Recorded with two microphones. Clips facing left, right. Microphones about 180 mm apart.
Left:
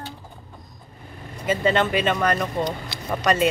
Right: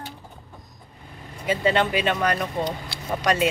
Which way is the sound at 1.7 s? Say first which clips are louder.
Left 1 dB; 10° right (ahead or behind).